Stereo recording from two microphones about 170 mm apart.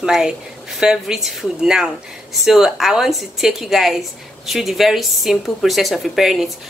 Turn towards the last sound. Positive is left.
turn(degrees=0)  # may be behind; listen again after turning